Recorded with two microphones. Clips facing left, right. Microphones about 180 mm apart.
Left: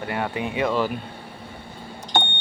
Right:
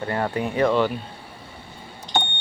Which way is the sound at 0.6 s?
5° left (ahead or behind).